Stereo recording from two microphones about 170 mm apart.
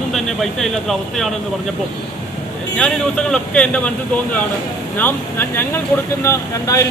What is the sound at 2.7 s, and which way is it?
Speech, 5° left (ahead or behind).